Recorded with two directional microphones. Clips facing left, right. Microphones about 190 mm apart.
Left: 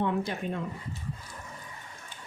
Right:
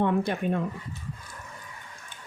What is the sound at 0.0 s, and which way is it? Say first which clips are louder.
Speech: right 4 dB; 55° right (ahead or behind).